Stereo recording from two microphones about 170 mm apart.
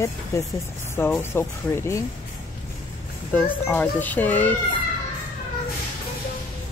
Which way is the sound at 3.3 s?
10° left (ahead or behind).